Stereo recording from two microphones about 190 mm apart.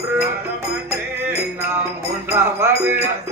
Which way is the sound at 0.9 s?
15° right (ahead or behind).